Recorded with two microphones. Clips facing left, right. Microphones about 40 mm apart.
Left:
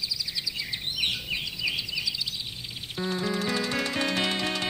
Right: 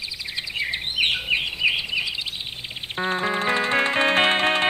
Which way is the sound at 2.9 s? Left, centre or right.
Right.